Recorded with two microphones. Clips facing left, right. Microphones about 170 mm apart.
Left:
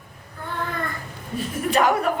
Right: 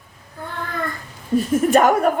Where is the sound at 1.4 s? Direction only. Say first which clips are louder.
Right 6 dB; 45° right (ahead or behind).